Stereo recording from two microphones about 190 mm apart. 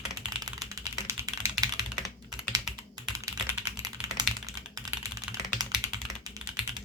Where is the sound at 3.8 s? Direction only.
20° right (ahead or behind).